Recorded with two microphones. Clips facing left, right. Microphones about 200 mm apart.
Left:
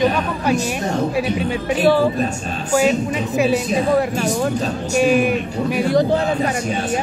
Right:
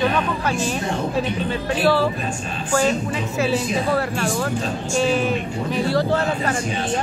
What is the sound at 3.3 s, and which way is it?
Speech, 15° left (ahead or behind).